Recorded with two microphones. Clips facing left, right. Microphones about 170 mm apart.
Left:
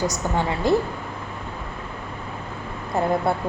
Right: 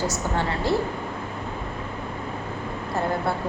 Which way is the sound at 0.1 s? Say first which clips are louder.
Left 2 dB; 15° left (ahead or behind).